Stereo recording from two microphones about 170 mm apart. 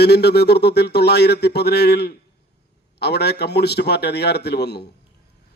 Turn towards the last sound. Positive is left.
turn(degrees=75)  # may be behind; listen again after turning